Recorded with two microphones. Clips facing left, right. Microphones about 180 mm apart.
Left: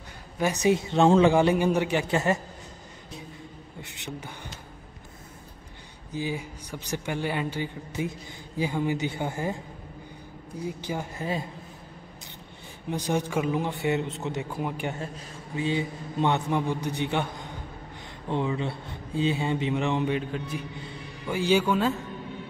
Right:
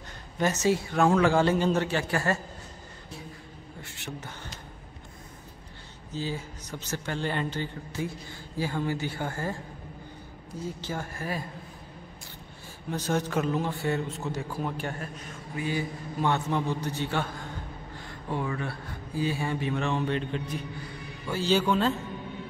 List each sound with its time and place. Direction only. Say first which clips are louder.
0.4 s speech: left 2 dB; 15° left (ahead or behind)
3.8 s beatboxing: left 2 dB; 20° left (ahead or behind)
6.1 s speech: left 2 dB; 15° left (ahead or behind)
10.6 s speech: left 2 dB; 15° left (ahead or behind)
12.9 s a man's voice: left 1 dB; 15° left (ahead or behind)
20.2 s a man's voice: even; 5° left (ahead or behind)